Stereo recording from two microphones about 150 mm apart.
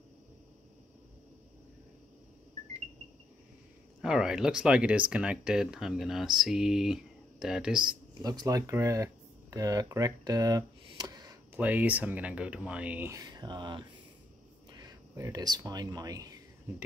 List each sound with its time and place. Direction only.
4.0 s speech: 5° right (ahead or behind)
8.2 s speech: 25° right (ahead or behind)
11.5 s speech: 10° right (ahead or behind)
13.1 s speech: 25° right (ahead or behind)